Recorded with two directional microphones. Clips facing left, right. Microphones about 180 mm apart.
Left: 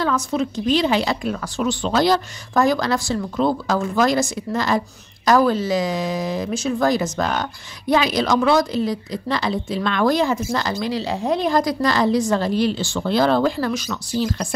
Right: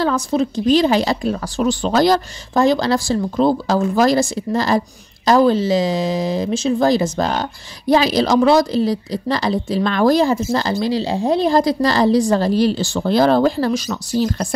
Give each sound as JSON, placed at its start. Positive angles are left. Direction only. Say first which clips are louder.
{"t": 0.0, "sound": "speech", "louder": "right 3 dB", "side_deg": -35}
{"t": 2.5, "sound": "speech", "louder": "right 3 dB", "side_deg": -25}